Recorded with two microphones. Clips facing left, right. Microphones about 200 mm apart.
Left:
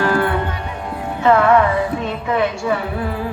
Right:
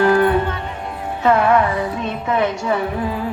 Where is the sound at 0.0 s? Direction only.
20° right (ahead or behind).